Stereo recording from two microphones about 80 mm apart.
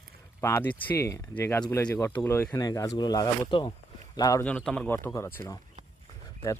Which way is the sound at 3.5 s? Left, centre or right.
Left.